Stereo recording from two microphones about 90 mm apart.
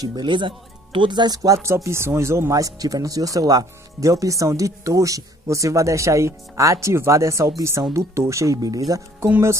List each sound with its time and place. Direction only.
0.0 s speech: 55° right (ahead or behind)